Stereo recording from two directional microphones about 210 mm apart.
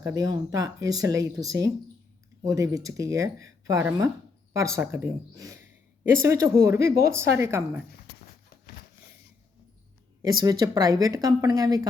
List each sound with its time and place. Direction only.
0.0 s speech: 15° right (ahead or behind)
10.4 s speech: 20° right (ahead or behind)